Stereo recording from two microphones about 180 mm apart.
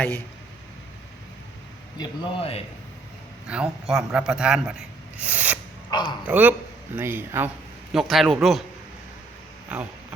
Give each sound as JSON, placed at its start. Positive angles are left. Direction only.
{"t": 2.0, "sound": "speech", "side_deg": 30}
{"t": 3.4, "sound": "a man's voice", "side_deg": -5}
{"t": 5.9, "sound": "a man's voice", "side_deg": 25}
{"t": 6.2, "sound": "speech", "side_deg": -10}
{"t": 7.9, "sound": "a man's voice", "side_deg": 0}
{"t": 9.6, "sound": "a sound", "side_deg": -10}